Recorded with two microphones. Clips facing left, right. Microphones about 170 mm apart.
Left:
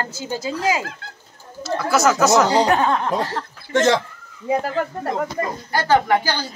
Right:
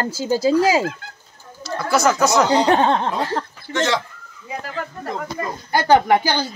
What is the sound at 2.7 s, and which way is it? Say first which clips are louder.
Speech: right 1 dB; 30° right (ahead or behind).